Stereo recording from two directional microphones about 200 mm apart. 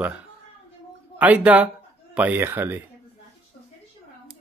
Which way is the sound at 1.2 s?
5° right (ahead or behind).